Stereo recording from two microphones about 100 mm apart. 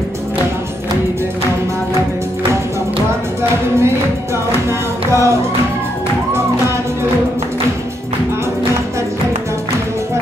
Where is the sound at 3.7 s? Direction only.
25° right (ahead or behind).